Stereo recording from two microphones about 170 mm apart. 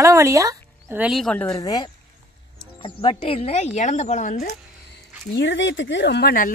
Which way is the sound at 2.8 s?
35° left (ahead or behind).